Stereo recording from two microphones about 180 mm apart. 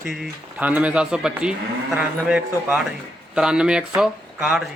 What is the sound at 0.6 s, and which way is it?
A man's voice, 10° right (ahead or behind).